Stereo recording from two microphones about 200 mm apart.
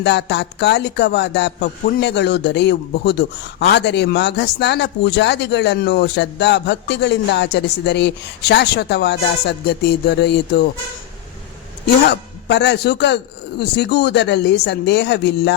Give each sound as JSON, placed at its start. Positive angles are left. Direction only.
{"t": 0.0, "sound": "a man's voice", "side_deg": 60}
{"t": 12.0, "sound": "a man's voice", "side_deg": 60}